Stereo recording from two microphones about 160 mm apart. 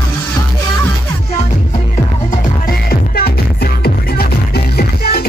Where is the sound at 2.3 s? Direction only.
65° left (ahead or behind).